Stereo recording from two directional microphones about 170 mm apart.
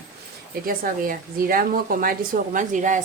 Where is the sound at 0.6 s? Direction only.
55° right (ahead or behind).